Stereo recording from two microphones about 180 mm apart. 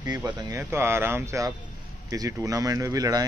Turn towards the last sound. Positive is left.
turn(degrees=-20)  # may be behind; listen again after turning